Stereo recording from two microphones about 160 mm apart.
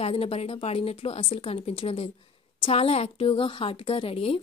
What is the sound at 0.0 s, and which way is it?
A woman's voice, 40° left (ahead or behind).